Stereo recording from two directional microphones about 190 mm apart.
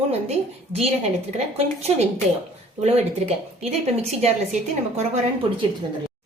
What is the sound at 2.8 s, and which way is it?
Speech, 35° right (ahead or behind).